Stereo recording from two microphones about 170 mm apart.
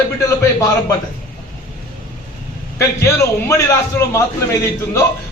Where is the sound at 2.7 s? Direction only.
15° left (ahead or behind).